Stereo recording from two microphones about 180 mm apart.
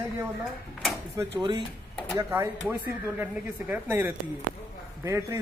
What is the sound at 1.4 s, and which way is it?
Speech, 25° right (ahead or behind).